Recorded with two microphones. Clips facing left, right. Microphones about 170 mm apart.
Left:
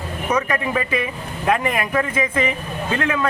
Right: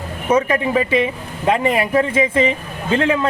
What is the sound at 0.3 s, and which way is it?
A man's voice, 25° right (ahead or behind).